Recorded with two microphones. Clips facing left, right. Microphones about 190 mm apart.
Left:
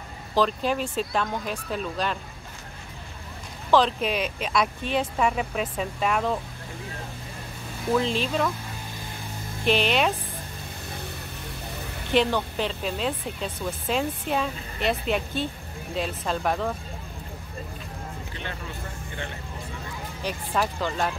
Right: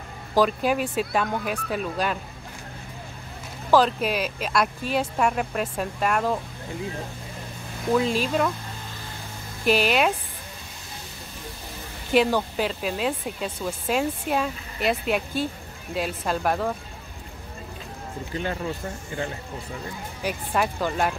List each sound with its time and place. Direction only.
0.3 s speech: 10° right (ahead or behind)
3.7 s speech: 5° right (ahead or behind)
7.9 s speech: 5° right (ahead or behind)
9.7 s speech: 5° right (ahead or behind)
12.1 s speech: 5° right (ahead or behind)
20.2 s speech: 10° right (ahead or behind)